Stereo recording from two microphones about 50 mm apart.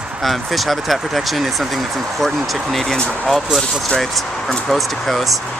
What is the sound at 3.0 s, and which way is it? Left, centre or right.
Speech, left.